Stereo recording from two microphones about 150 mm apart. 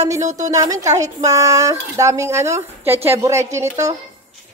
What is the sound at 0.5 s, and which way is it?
A woman's voice, 25° right (ahead or behind).